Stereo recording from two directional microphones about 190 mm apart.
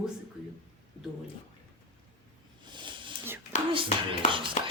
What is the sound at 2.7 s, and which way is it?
Snake, 25° right (ahead or behind).